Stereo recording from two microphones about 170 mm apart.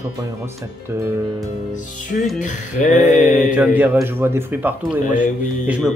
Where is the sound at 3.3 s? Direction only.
10° right (ahead or behind).